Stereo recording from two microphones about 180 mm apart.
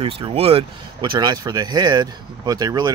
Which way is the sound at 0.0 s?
30° right (ahead or behind).